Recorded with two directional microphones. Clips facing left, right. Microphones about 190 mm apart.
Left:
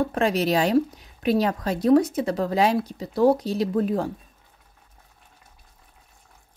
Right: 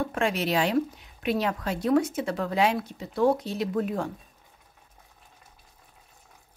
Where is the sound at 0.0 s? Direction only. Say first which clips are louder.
Left 5 dB; 35° left (ahead or behind).